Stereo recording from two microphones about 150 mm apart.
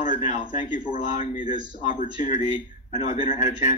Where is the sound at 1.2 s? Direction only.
30° right (ahead or behind).